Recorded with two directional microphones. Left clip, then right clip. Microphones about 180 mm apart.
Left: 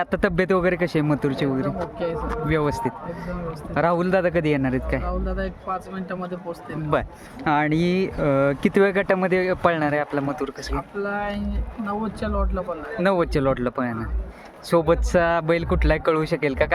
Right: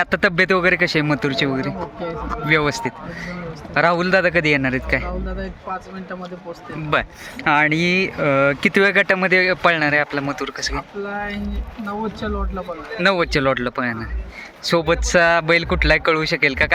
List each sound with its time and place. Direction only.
0.0 s speech: 15° left (ahead or behind)
1.8 s speech: 20° right (ahead or behind)
2.5 s speech: 10° left (ahead or behind)
6.9 s speech: 15° left (ahead or behind)